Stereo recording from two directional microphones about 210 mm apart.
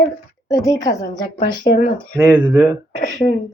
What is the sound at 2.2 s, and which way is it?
Speech, 10° right (ahead or behind).